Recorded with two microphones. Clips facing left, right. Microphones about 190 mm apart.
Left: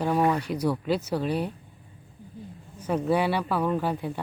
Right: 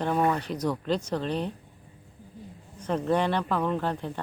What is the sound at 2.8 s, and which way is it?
Speech, 10° left (ahead or behind).